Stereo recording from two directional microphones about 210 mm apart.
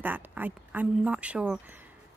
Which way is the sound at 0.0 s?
10° right (ahead or behind).